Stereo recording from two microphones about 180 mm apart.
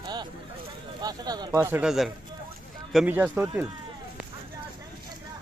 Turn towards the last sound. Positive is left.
turn(degrees=-10)  # may be behind; listen again after turning